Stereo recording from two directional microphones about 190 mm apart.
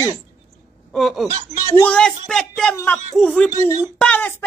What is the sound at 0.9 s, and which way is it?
A woman's voice, centre (ahead or behind).